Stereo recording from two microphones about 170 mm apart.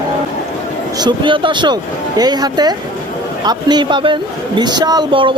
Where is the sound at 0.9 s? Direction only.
25° right (ahead or behind).